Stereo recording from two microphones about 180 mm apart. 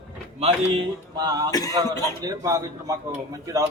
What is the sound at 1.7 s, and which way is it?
A man's voice, 20° right (ahead or behind).